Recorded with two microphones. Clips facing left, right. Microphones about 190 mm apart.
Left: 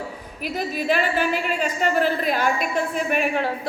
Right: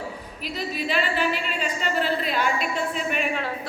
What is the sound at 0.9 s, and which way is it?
A woman's voice, 45° left (ahead or behind).